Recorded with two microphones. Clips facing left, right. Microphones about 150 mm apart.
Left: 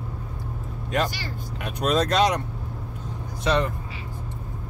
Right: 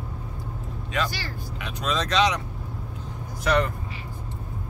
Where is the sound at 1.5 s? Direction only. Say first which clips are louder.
Left 5 dB; 55° left (ahead or behind).